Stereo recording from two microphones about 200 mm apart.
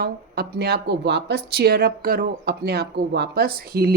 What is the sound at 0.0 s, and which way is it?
A woman's voice, 50° right (ahead or behind).